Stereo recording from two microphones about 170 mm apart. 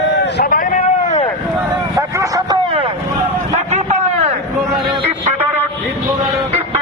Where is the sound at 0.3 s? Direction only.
55° left (ahead or behind).